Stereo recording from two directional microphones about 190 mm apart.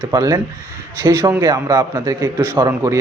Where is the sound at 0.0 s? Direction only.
15° right (ahead or behind).